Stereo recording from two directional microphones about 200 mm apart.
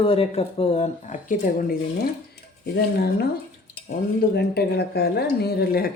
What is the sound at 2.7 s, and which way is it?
Speech, 55° left (ahead or behind).